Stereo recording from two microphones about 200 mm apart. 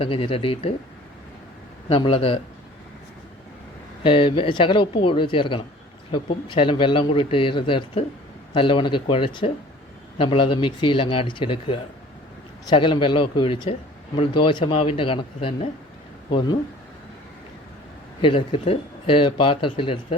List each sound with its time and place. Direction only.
0.0 s speech: 30° left (ahead or behind)
1.9 s speech: 25° left (ahead or behind)
4.0 s speech: 25° left (ahead or behind)
18.2 s speech: 25° left (ahead or behind)